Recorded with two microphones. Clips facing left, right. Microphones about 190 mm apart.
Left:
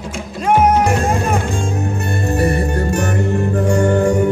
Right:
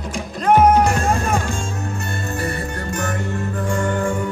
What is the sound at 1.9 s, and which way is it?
Music, 35° left (ahead or behind).